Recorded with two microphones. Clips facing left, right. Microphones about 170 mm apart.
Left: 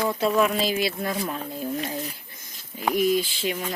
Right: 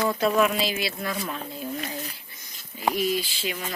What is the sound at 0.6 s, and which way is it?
Speech, 45° left (ahead or behind).